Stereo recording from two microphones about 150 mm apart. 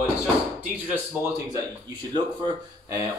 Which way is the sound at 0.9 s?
10° right (ahead or behind).